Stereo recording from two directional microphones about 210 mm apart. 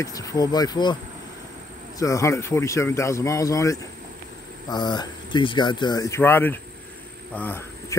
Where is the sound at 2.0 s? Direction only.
15° left (ahead or behind).